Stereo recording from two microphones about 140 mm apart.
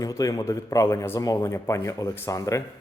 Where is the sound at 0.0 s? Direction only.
25° left (ahead or behind).